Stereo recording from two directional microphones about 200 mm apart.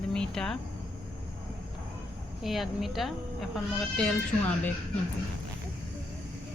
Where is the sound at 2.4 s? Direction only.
Centre (ahead or behind).